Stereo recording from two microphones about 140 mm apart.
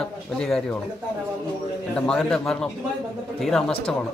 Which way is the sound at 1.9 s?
5° left (ahead or behind).